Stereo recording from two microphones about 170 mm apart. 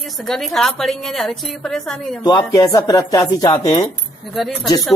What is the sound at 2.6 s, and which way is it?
Speech, 20° left (ahead or behind).